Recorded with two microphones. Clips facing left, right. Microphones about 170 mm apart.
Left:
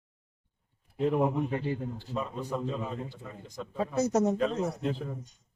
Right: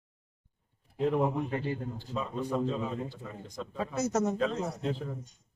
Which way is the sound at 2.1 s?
5° left (ahead or behind).